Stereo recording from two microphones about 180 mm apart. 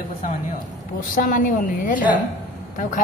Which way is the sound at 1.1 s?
50° left (ahead or behind).